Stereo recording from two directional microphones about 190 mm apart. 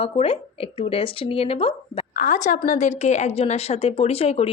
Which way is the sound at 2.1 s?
40° left (ahead or behind).